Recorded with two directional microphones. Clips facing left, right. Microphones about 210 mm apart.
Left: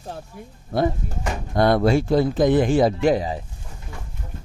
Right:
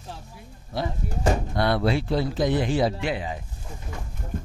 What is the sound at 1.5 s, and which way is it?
A man's voice, 45° left (ahead or behind).